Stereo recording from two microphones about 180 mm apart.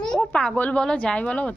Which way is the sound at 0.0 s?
5° left (ahead or behind).